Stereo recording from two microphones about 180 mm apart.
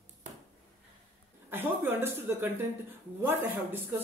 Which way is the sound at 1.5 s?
10° right (ahead or behind).